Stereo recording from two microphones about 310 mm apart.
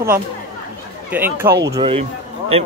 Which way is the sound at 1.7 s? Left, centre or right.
Centre.